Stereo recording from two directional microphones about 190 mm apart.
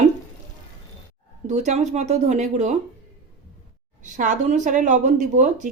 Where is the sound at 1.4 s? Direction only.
40° right (ahead or behind).